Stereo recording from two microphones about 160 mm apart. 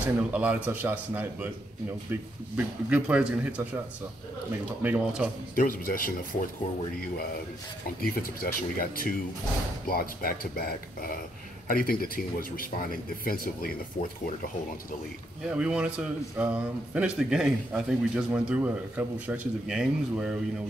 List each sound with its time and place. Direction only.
0.0 s speech: 10° right (ahead or behind)
4.8 s speech: 10° right (ahead or behind)
5.6 s speech: 65° left (ahead or behind)
8.0 s speech: 65° left (ahead or behind)
15.4 s speech: 5° right (ahead or behind)